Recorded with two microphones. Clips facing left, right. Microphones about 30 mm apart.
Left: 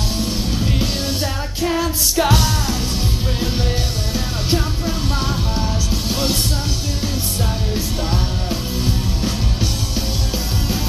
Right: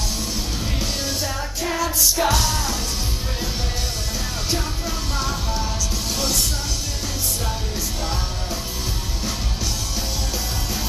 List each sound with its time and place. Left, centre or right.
0.7 s music: left
4.5 s music: left
8.8 s music: left